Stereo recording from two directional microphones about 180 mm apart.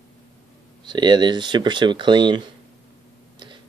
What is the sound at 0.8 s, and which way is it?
Speech, 25° right (ahead or behind).